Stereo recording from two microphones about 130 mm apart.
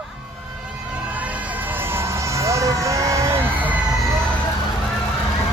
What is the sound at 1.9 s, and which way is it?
Vehicle, 25° right (ahead or behind).